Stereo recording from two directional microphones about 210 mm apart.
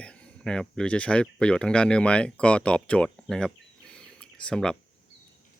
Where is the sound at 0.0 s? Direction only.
5° left (ahead or behind).